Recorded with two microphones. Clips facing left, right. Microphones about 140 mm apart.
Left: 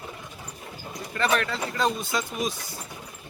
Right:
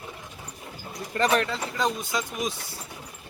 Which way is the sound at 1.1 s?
35° right (ahead or behind).